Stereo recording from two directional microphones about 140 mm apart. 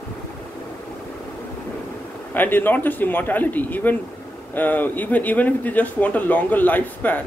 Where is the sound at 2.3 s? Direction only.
15° left (ahead or behind).